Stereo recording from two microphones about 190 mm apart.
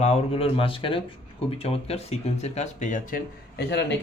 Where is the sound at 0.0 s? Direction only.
30° left (ahead or behind).